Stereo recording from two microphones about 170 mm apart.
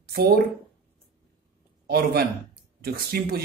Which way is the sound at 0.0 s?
65° right (ahead or behind).